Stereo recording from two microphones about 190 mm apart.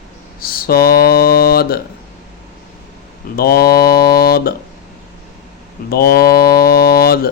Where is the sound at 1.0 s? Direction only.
55° left (ahead or behind).